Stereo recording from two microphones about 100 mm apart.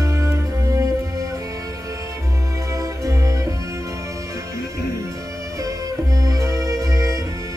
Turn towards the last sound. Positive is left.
turn(degrees=-35)  # may be behind; listen again after turning